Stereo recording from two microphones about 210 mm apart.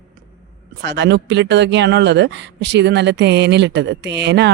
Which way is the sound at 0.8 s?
55° right (ahead or behind).